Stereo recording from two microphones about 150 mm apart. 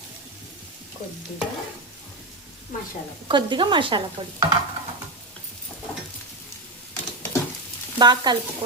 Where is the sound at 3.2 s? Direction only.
30° right (ahead or behind).